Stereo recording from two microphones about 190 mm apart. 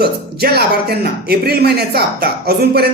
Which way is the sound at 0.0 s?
55° right (ahead or behind).